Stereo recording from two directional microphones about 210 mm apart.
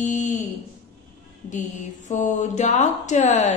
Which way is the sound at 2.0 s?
35° left (ahead or behind).